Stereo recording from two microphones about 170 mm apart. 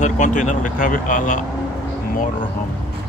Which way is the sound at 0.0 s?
45° left (ahead or behind).